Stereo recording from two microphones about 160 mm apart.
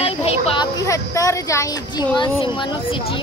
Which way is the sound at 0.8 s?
20° left (ahead or behind).